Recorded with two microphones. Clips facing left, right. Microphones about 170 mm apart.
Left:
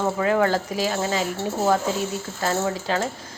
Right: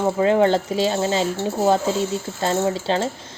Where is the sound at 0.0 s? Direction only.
25° right (ahead or behind).